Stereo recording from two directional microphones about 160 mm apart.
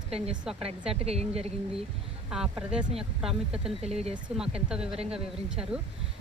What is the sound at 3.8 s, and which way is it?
Speech, 40° right (ahead or behind).